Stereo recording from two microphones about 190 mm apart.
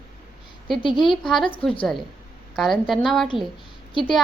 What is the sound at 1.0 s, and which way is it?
Speech, centre (ahead or behind).